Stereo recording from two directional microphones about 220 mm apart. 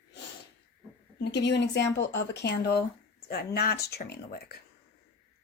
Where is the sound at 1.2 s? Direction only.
50° left (ahead or behind).